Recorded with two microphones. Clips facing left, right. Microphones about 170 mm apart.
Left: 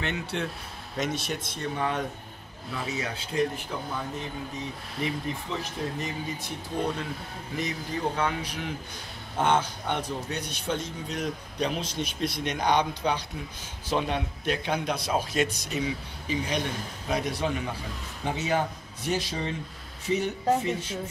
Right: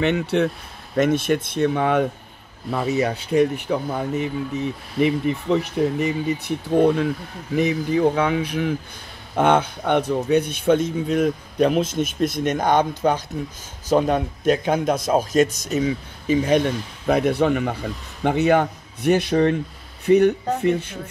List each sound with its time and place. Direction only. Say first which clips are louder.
0.0 s speech: right 12 dB; 65° right (ahead or behind)
0.9 s speech: right 12 dB; 55° right (ahead or behind)